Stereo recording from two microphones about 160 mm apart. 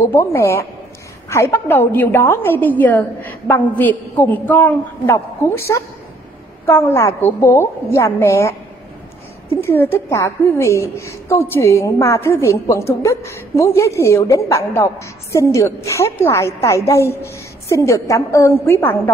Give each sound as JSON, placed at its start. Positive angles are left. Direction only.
{"t": 0.0, "sound": "a woman's voice", "side_deg": 15}